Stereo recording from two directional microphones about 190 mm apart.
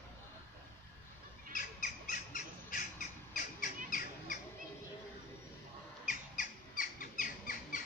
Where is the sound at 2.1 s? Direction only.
45° left (ahead or behind).